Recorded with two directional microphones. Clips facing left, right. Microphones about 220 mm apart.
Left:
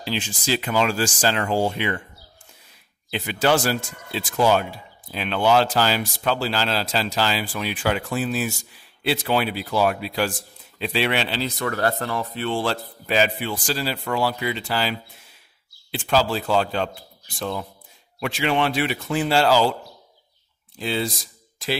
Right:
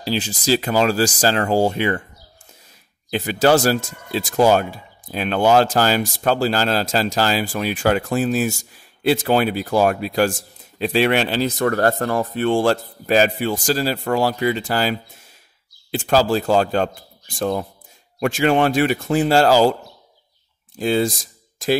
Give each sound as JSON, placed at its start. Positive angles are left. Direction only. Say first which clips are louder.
{"t": 0.0, "sound": "speech", "louder": "right 5 dB", "side_deg": -40}
{"t": 3.1, "sound": "speech", "louder": "right 5 dB", "side_deg": -40}
{"t": 20.7, "sound": "speech", "louder": "right 7 dB", "side_deg": -45}